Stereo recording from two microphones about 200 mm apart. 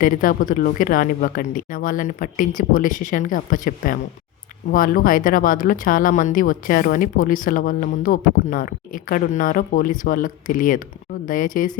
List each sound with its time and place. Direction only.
0.0 s speech: 45° left (ahead or behind)